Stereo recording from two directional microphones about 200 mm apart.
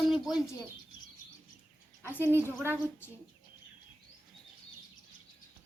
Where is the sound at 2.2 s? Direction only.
10° right (ahead or behind).